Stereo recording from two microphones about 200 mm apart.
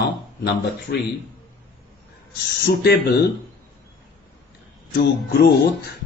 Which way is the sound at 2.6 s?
50° left (ahead or behind).